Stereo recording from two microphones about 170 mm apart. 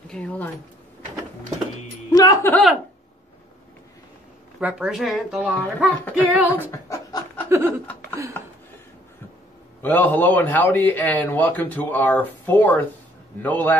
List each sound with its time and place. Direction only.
0.1 s a man's voice: 5° left (ahead or behind)
2.0 s speech: 20° left (ahead or behind)
2.5 s speech: centre (ahead or behind)
4.6 s speech: 5° right (ahead or behind)
6.2 s a sound: 10° right (ahead or behind)
6.7 s a sound: 20° left (ahead or behind)
7.4 s laughter: 15° right (ahead or behind)
7.8 s chuckle: 10° left (ahead or behind)
9.8 s a man's voice: 10° left (ahead or behind)